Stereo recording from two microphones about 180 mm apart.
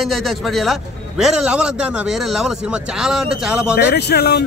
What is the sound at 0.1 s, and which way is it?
A man's voice, centre (ahead or behind).